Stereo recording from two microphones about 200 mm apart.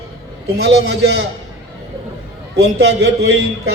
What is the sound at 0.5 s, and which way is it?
Speech, 55° right (ahead or behind).